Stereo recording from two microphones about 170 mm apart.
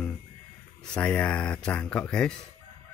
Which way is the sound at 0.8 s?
5° left (ahead or behind).